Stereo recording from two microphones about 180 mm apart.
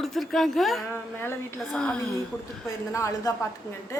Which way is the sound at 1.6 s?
5° left (ahead or behind).